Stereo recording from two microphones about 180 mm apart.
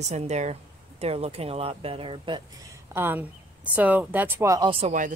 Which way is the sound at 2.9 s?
10° right (ahead or behind).